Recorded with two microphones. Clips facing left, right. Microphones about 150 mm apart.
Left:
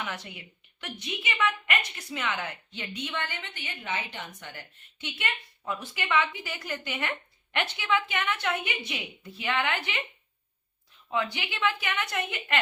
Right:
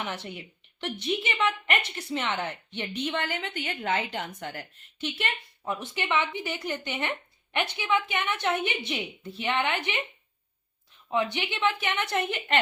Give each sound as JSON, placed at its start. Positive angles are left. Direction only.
{"t": 0.0, "sound": "a woman's voice", "side_deg": -30}
{"t": 5.6, "sound": "a woman's voice", "side_deg": -20}
{"t": 11.1, "sound": "a woman's voice", "side_deg": -20}